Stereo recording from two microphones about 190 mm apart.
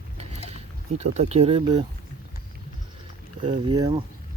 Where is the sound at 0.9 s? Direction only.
35° right (ahead or behind).